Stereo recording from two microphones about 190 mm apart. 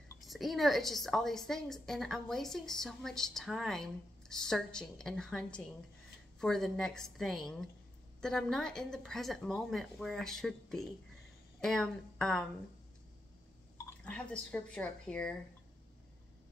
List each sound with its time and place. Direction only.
0.2 s a woman's voice: centre (ahead or behind)
13.8 s speech: 5° left (ahead or behind)